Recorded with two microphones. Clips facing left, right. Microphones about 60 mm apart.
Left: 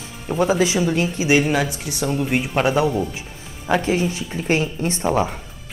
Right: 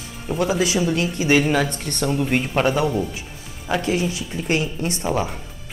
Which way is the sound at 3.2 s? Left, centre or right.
Left.